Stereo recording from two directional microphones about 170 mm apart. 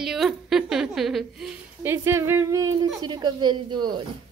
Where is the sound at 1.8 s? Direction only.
15° right (ahead or behind).